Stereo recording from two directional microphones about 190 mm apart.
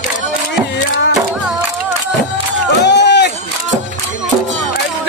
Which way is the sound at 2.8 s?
65° left (ahead or behind).